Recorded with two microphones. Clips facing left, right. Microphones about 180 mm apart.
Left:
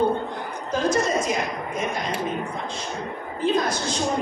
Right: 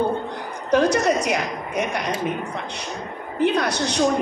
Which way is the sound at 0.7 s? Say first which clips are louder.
Right 5 dB; 70° right (ahead or behind).